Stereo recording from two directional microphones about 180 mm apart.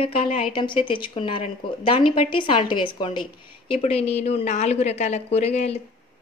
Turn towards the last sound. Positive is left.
turn(degrees=35)  # may be behind; listen again after turning